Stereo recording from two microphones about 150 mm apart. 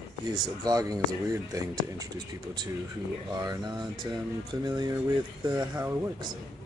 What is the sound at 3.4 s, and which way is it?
Speech, 30° right (ahead or behind).